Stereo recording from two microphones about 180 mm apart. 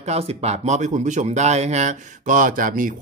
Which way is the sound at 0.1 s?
35° right (ahead or behind).